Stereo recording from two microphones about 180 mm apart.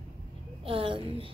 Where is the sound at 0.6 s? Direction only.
30° right (ahead or behind).